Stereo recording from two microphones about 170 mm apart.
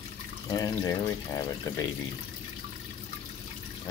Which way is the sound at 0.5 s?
20° left (ahead or behind).